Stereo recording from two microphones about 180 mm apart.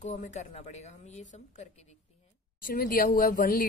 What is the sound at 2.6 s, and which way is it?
Speech, 50° left (ahead or behind).